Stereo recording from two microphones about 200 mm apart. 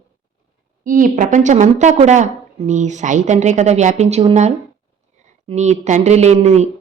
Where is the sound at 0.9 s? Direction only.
40° right (ahead or behind).